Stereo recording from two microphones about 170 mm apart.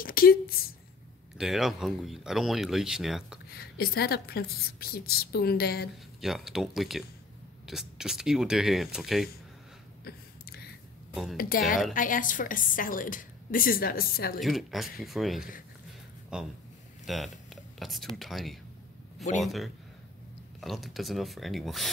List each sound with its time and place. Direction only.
0.0 s a sound: 60° left (ahead or behind)
1.4 s speech: centre (ahead or behind)
3.4 s a woman's voice: 65° left (ahead or behind)
6.2 s speech: centre (ahead or behind)
10.0 s a sound: 65° left (ahead or behind)
11.3 s a woman's voice: 55° left (ahead or behind)
14.4 s speech: centre (ahead or behind)